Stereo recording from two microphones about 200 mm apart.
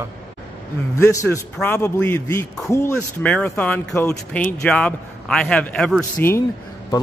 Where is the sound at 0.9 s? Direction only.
15° left (ahead or behind).